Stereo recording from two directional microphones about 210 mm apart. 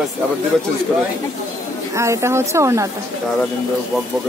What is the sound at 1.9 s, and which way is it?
Speech, 15° right (ahead or behind).